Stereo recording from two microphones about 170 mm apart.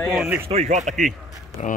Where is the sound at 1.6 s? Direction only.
40° left (ahead or behind).